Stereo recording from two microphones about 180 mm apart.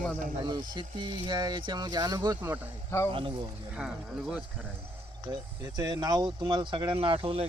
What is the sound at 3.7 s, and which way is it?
Speech, 5° right (ahead or behind).